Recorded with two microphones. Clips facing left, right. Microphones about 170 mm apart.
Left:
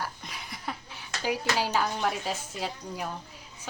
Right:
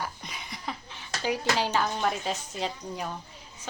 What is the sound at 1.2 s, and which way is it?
A woman's voice, 10° left (ahead or behind).